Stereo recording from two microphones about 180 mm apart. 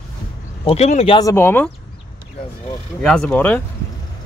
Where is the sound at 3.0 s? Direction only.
5° left (ahead or behind).